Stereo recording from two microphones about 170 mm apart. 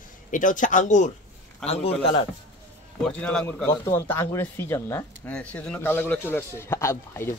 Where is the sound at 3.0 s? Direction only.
5° left (ahead or behind).